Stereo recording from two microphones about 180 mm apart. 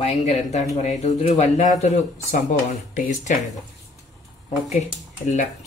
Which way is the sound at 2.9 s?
45° left (ahead or behind).